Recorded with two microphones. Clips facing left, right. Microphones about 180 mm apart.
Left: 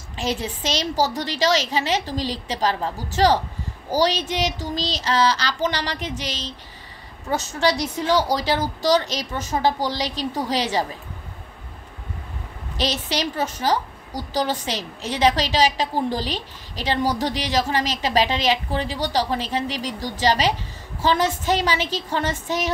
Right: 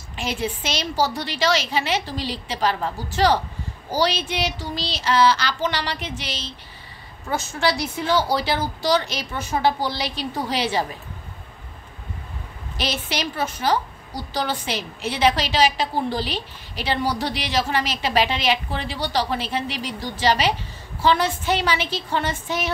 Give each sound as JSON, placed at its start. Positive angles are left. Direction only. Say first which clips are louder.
{"t": 0.2, "sound": "a woman's voice", "louder": "left 1 dB", "side_deg": 35}
{"t": 12.7, "sound": "a woman's voice", "louder": "left 2 dB", "side_deg": 35}